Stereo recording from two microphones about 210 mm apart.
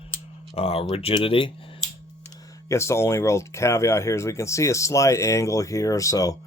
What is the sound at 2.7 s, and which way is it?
Speech, 15° left (ahead or behind).